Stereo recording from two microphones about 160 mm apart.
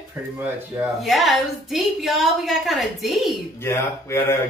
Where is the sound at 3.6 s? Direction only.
15° left (ahead or behind).